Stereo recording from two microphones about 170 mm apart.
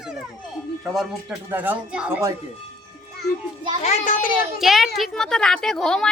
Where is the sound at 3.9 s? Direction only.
50° left (ahead or behind).